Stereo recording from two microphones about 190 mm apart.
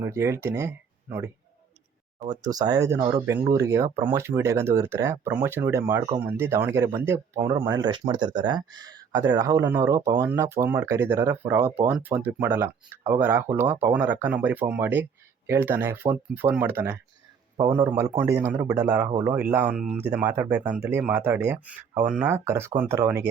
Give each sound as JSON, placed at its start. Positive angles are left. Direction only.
{"t": 0.0, "sound": "speech", "side_deg": -15}